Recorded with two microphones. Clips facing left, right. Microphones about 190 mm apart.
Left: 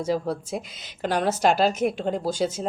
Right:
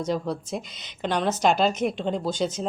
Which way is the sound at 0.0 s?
5° left (ahead or behind).